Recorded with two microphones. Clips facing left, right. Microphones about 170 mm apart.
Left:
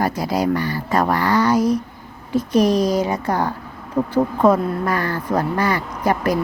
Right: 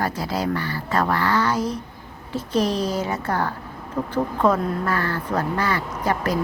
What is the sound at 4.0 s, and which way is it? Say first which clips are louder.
Speech: left 6 dB; 30° left (ahead or behind).